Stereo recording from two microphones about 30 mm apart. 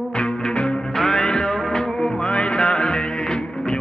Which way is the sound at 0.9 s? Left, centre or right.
Centre.